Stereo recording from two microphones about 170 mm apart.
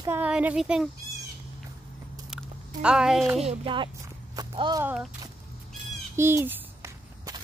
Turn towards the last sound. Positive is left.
turn(degrees=-20)  # may be behind; listen again after turning